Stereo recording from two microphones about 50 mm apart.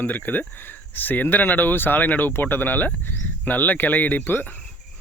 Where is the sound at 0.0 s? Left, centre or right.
Left.